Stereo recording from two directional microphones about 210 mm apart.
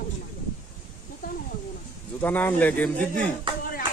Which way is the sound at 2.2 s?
10° left (ahead or behind).